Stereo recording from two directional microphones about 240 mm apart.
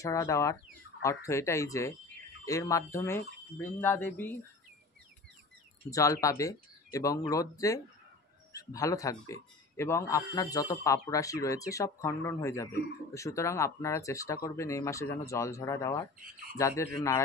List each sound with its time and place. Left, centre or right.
0.0 s a man's voice: centre
5.9 s a man's voice: centre
16.2 s speech: right
16.5 s a man's voice: centre